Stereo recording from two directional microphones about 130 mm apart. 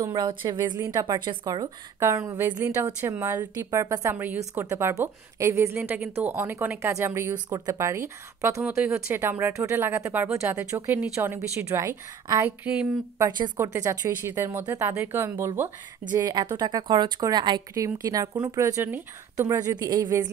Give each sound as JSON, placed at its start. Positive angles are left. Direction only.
{"t": 0.0, "sound": "a woman's voice", "side_deg": -30}
{"t": 4.1, "sound": "a woman's voice", "side_deg": -15}
{"t": 16.2, "sound": "a woman's voice", "side_deg": -30}